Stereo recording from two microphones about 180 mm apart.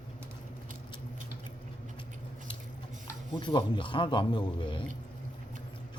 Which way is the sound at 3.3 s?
25° left (ahead or behind).